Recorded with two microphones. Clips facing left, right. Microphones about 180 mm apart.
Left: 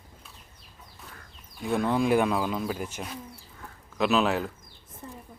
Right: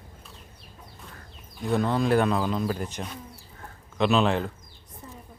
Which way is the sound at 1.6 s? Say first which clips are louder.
Right 1 dB; 5° left (ahead or behind).